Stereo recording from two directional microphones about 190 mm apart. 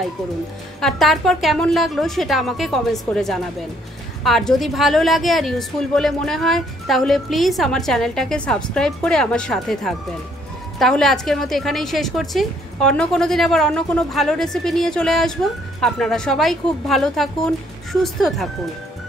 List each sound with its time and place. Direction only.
0.7 s a woman's voice: centre (ahead or behind)